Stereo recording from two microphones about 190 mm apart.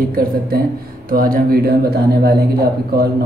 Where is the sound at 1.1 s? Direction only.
50° right (ahead or behind).